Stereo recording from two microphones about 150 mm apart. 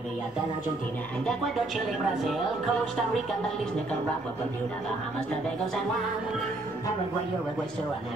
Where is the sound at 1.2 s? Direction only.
Centre (ahead or behind).